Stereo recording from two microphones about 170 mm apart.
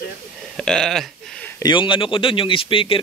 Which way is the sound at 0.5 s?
5° left (ahead or behind).